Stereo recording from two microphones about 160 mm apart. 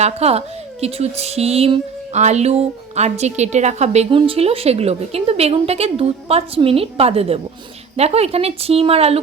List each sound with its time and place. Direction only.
0.0 s speech: 40° right (ahead or behind)